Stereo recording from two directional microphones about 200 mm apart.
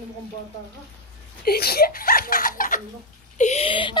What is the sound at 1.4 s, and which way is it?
Speech, 50° left (ahead or behind).